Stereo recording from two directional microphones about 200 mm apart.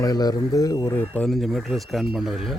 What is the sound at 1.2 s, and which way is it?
Speech, centre (ahead or behind).